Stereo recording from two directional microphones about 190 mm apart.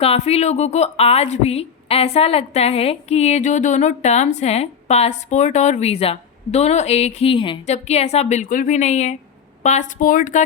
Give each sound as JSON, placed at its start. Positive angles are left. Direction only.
{"t": 0.0, "sound": "a woman's voice", "side_deg": 35}